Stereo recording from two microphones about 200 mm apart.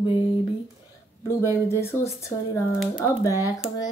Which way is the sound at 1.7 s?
10° left (ahead or behind).